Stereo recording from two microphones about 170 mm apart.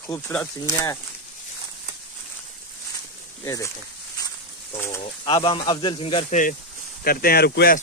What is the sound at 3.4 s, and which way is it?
Speech, 20° left (ahead or behind).